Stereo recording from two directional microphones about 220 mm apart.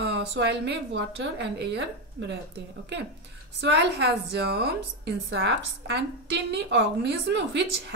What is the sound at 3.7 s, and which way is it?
A woman's voice, 50° right (ahead or behind).